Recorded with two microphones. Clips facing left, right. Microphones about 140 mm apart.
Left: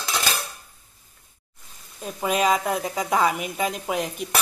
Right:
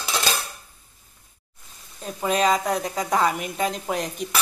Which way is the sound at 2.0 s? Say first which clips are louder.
Right 1 dB; 5° left (ahead or behind).